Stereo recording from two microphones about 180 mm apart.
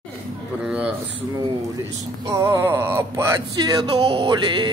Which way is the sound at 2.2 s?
15° right (ahead or behind).